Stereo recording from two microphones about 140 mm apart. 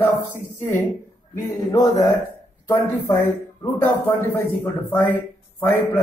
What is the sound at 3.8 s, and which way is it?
A man's voice, 15° left (ahead or behind).